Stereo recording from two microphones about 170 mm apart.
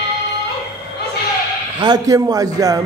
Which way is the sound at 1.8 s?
20° right (ahead or behind).